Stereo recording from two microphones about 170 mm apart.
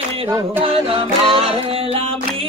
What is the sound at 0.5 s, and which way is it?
Music, 35° right (ahead or behind).